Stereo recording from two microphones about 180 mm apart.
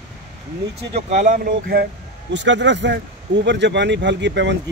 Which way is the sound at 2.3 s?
85° right.